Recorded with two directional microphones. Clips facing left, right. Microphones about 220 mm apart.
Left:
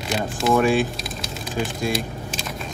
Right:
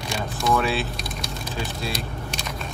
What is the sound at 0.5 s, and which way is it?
Speech, 15° left (ahead or behind).